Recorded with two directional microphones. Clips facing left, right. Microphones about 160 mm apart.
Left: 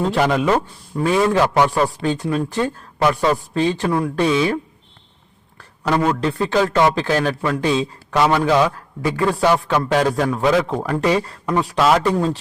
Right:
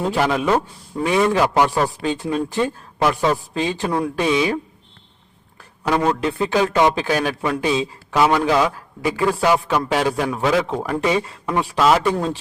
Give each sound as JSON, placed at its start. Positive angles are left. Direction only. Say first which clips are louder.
{"t": 0.0, "sound": "speech", "louder": "left 2 dB", "side_deg": 0}
{"t": 0.9, "sound": "speech", "louder": "left 2 dB", "side_deg": -20}
{"t": 1.3, "sound": "a man's voice", "louder": "left 1 dB", "side_deg": -10}
{"t": 2.0, "sound": "speech", "louder": "left 1 dB", "side_deg": -20}
{"t": 3.0, "sound": "speech", "louder": "left 1 dB", "side_deg": -5}
{"t": 3.8, "sound": "speech", "louder": "left 2 dB", "side_deg": -20}
{"t": 6.5, "sound": "a man's voice", "louder": "left 1 dB", "side_deg": -10}